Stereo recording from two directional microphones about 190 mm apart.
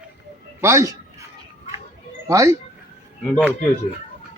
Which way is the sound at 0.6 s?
15° right (ahead or behind).